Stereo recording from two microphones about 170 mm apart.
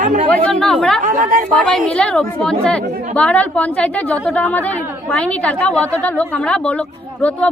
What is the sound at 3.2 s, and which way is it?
A woman's voice, 10° left (ahead or behind).